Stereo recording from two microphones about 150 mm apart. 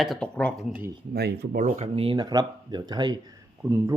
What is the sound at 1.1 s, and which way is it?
Speech, 90° right.